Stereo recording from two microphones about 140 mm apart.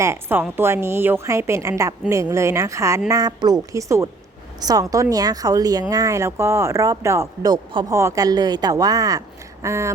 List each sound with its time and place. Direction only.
0.0 s a woman's voice: 15° right (ahead or behind)